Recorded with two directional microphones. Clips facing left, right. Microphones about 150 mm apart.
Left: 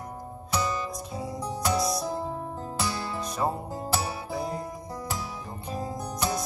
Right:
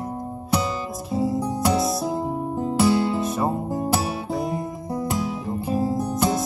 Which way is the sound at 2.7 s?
25° right (ahead or behind).